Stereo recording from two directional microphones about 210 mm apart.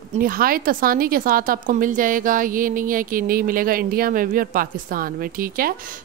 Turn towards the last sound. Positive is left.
turn(degrees=-45)  # may be behind; listen again after turning